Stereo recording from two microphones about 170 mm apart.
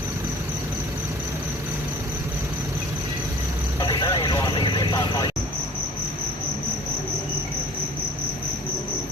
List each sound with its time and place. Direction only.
3.8 s vehicle: 30° left (ahead or behind)